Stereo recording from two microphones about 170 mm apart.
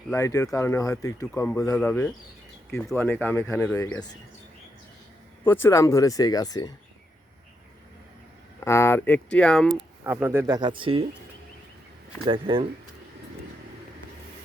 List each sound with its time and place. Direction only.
0.2 s speech: 20° left (ahead or behind)
5.5 s speech: 15° left (ahead or behind)
8.6 s speech: 15° left (ahead or behind)
10.0 s speech: 15° right (ahead or behind); by 11.0 s 30° right (ahead or behind)
12.3 s speech: 30° right (ahead or behind)